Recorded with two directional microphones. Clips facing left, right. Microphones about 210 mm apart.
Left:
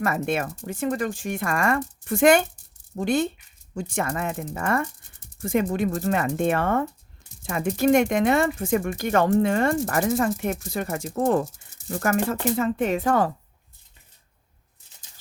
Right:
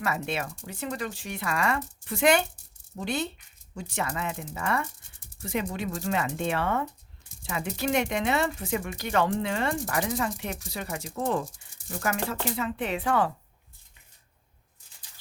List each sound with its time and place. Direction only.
0.0 s speech: 50° left (ahead or behind)